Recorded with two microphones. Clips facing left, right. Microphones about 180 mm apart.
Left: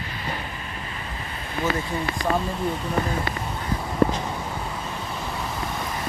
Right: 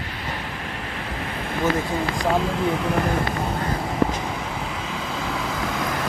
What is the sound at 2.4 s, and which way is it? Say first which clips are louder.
Speech: right 4 dB; 90° right.